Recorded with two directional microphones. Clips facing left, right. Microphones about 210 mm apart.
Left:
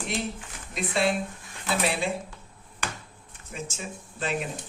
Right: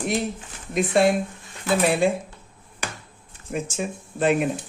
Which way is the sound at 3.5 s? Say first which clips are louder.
Right 9 dB; 55° right (ahead or behind).